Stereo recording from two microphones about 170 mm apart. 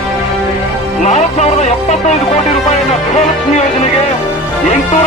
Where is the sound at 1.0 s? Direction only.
40° left (ahead or behind).